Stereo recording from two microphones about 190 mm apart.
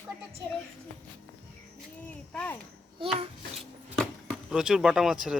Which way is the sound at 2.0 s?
10° left (ahead or behind).